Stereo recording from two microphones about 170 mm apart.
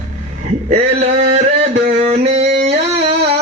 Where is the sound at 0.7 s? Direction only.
40° right (ahead or behind).